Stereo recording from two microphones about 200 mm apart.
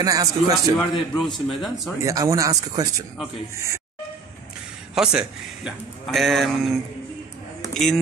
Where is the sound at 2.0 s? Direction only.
15° right (ahead or behind).